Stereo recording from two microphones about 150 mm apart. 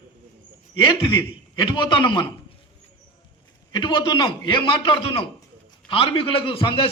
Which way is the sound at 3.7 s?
30° left (ahead or behind).